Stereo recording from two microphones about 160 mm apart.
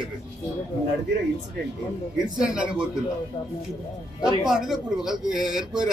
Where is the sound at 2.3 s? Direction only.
5° right (ahead or behind).